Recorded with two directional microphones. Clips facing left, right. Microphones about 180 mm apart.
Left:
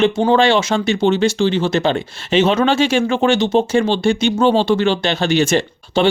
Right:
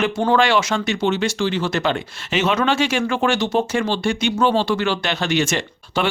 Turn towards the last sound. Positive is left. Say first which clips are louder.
# left 6 dB
turn(degrees=30)  # may be behind; listen again after turning